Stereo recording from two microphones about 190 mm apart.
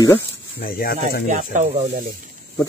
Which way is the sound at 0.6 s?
50° left (ahead or behind).